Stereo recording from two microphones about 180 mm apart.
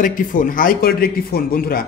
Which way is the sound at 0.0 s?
50° left (ahead or behind).